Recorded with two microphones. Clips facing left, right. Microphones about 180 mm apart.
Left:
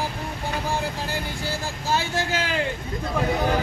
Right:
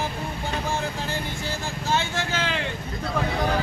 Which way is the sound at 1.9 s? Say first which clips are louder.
Left 1 dB; 40° left (ahead or behind).